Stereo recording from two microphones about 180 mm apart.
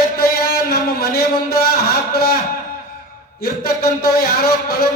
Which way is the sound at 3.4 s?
60° left (ahead or behind).